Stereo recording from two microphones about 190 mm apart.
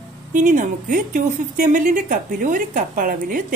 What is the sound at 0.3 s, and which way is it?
Speech, 45° right (ahead or behind).